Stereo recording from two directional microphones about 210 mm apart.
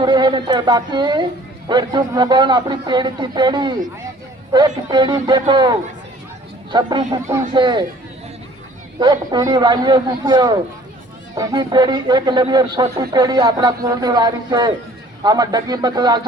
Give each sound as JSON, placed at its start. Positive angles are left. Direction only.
{"t": 0.0, "sound": "a man's voice", "side_deg": -20}
{"t": 9.0, "sound": "a man's voice", "side_deg": -20}